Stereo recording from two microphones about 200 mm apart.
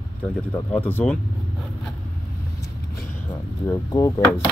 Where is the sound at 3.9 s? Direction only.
15° left (ahead or behind).